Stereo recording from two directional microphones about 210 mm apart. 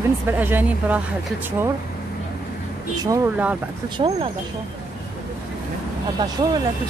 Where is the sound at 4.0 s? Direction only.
25° right (ahead or behind).